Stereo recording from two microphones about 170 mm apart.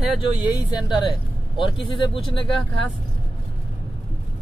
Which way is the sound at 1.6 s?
30° left (ahead or behind).